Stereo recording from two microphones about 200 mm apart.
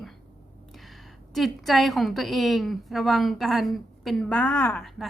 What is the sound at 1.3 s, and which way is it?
A woman's voice, centre (ahead or behind).